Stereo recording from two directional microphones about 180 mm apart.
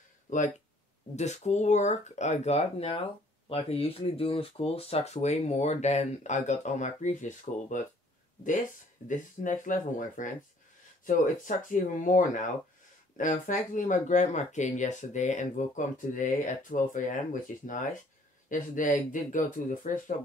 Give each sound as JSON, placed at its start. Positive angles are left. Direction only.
{"t": 0.3, "sound": "speech", "side_deg": 45}